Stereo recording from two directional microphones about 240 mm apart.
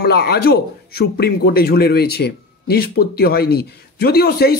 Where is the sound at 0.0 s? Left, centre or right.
Left.